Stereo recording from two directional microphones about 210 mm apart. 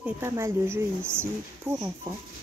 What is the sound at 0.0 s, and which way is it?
Speech, 10° right (ahead or behind).